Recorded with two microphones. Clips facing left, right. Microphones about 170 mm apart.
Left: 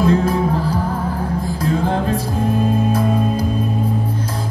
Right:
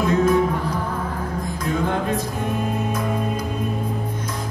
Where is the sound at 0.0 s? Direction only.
30° left (ahead or behind).